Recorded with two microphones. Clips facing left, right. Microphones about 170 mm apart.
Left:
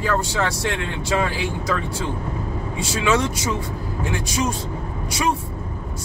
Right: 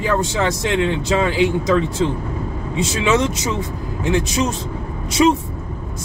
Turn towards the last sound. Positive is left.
turn(degrees=-25)  # may be behind; listen again after turning